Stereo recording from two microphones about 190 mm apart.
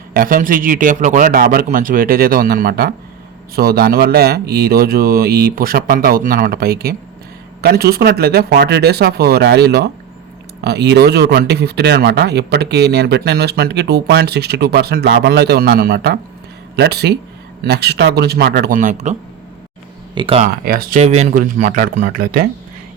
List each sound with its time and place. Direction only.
0.1 s speech: 50° right (ahead or behind)
20.1 s speech: 25° right (ahead or behind)
20.4 s speech: 45° right (ahead or behind)